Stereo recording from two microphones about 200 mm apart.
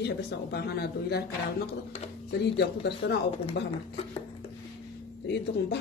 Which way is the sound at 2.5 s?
60° left (ahead or behind).